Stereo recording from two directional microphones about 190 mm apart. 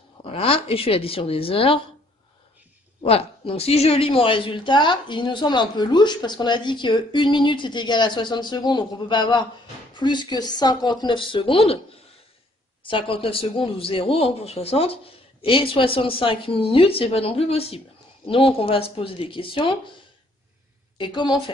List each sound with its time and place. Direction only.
0.2 s speech: 30° left (ahead or behind)
3.0 s speech: 30° left (ahead or behind)
12.8 s speech: 25° left (ahead or behind)
21.0 s speech: 25° left (ahead or behind)